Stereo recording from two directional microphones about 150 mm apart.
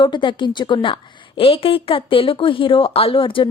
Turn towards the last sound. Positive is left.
turn(degrees=35)  # may be behind; listen again after turning